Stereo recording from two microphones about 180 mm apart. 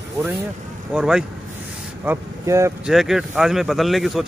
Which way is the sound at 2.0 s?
15° right (ahead or behind).